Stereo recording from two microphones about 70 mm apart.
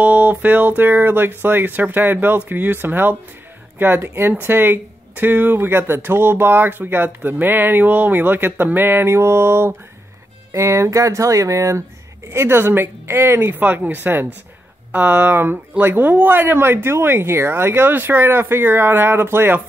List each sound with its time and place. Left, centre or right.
0.0 s speech: right
12.3 s speech: right